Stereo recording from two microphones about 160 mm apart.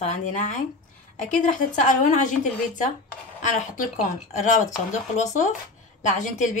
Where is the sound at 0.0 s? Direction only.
50° left (ahead or behind).